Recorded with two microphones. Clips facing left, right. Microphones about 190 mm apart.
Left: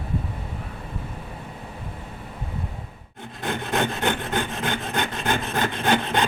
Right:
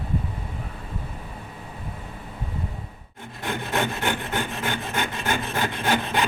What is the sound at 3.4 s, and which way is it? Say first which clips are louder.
Rub: left 1 dB; 20° left (ahead or behind).